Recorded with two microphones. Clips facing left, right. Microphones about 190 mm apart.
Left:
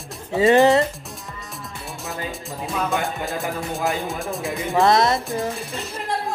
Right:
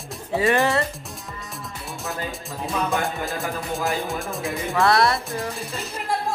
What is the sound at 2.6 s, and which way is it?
Speech, centre (ahead or behind).